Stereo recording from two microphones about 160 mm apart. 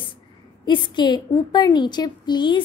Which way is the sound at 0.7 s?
30° left (ahead or behind).